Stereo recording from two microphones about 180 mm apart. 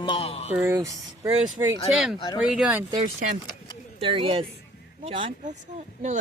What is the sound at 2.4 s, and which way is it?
Speech, 5° right (ahead or behind).